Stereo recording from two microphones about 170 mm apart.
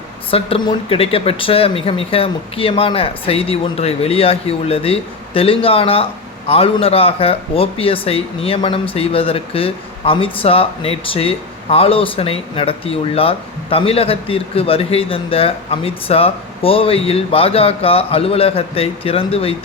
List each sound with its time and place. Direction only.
0.3 s speech: 35° left (ahead or behind)